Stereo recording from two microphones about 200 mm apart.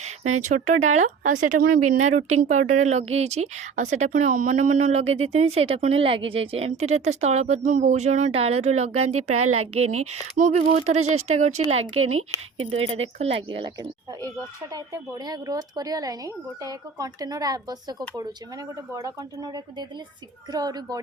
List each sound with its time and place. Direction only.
0.4 s a woman's voice: 35° right (ahead or behind)
9.1 s a woman's voice: 90° right
10.0 s a woman's voice: 35° right (ahead or behind)
11.8 s a woman's voice: 90° right
12.7 s speech: 30° right (ahead or behind)
18.9 s speech: 20° right (ahead or behind)